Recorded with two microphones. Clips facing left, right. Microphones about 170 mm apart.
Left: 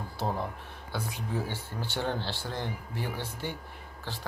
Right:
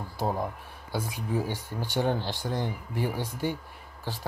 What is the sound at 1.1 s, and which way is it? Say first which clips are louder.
Speech: right 4 dB; 15° right (ahead or behind).